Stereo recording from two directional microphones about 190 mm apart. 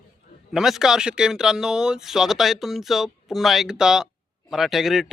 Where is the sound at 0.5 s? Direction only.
Centre (ahead or behind).